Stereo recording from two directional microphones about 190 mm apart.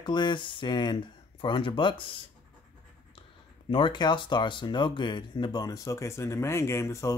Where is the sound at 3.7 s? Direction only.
25° left (ahead or behind).